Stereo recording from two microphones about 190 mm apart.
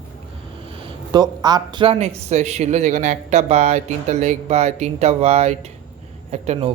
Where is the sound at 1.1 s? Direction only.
20° right (ahead or behind).